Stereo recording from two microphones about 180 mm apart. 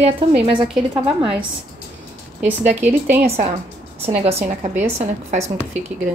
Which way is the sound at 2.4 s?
40° right (ahead or behind).